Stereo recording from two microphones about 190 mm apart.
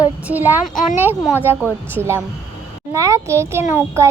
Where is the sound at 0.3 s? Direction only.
10° right (ahead or behind).